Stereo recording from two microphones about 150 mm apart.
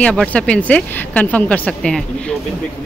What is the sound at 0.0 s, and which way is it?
Speech, 5° left (ahead or behind).